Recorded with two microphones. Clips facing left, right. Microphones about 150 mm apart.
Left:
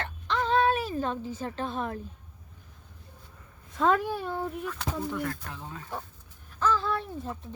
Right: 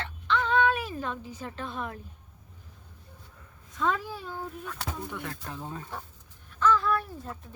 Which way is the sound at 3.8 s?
55° left (ahead or behind).